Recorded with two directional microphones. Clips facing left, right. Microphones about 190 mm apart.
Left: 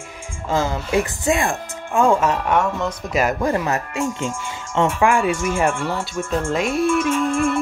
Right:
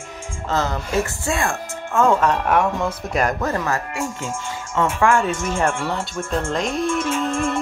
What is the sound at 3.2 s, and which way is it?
Speech, 10° left (ahead or behind).